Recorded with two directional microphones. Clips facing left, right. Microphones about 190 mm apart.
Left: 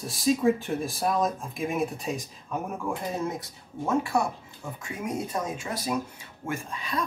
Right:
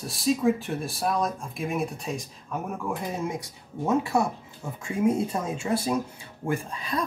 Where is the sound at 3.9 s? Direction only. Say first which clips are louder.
Right 2 dB; 20° right (ahead or behind).